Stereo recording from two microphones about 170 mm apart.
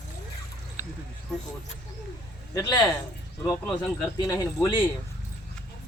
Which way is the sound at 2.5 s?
25° left (ahead or behind).